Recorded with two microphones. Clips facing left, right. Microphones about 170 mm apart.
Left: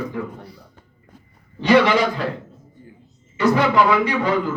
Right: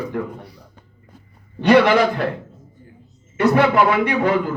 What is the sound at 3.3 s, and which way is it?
Speech, 60° right (ahead or behind).